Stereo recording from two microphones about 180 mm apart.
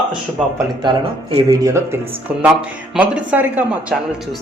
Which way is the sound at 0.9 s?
20° right (ahead or behind).